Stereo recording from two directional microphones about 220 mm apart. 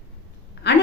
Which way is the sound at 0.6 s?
50° left (ahead or behind).